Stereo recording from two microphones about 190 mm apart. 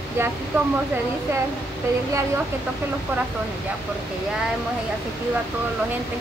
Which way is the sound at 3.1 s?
10° right (ahead or behind).